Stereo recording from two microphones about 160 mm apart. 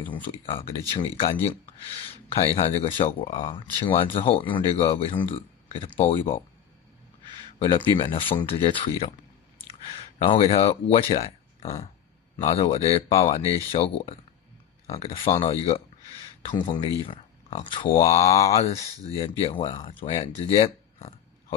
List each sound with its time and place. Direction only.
0.0 s speech: 30° left (ahead or behind)
7.5 s speech: 35° left (ahead or behind)
18.2 s speech: 20° left (ahead or behind)
18.5 s speech: 40° left (ahead or behind)